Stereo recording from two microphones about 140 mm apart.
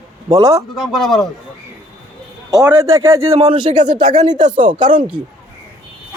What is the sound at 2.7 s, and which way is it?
Speech, 20° right (ahead or behind).